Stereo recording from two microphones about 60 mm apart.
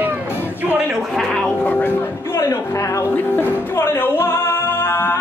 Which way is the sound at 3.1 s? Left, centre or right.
Left.